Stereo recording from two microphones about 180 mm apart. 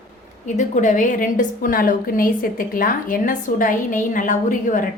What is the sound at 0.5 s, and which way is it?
A woman's voice, 45° left (ahead or behind).